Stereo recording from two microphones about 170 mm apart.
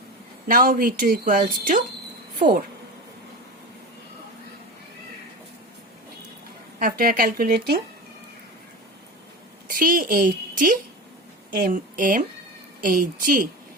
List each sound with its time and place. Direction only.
0.4 s speech: 55° right (ahead or behind)
6.7 s speech: 60° right (ahead or behind)
9.6 s a woman's voice: 55° right (ahead or behind)